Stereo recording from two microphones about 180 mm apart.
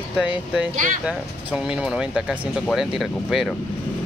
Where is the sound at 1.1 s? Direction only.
5° right (ahead or behind).